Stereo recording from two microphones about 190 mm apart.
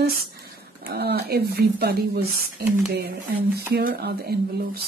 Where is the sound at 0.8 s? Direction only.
55° right (ahead or behind).